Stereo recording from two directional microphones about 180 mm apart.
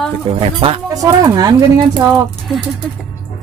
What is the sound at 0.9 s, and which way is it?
Speech, 20° right (ahead or behind).